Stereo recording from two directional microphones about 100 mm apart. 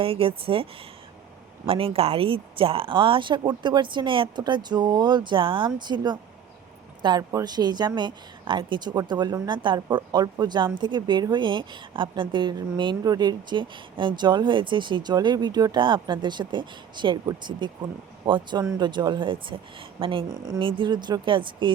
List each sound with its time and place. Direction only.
0.0 s a woman's voice: 65° right (ahead or behind); by 6.1 s 45° right (ahead or behind)
7.2 s a woman's voice: 35° right (ahead or behind); by 20.2 s 60° right (ahead or behind)
20.2 s a woman's voice: 35° right (ahead or behind)
20.6 s a woman's voice: 60° right (ahead or behind)